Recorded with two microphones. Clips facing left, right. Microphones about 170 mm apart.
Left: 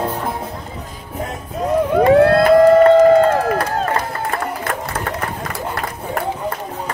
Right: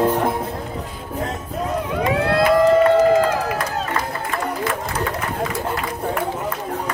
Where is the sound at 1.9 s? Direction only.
50° left (ahead or behind).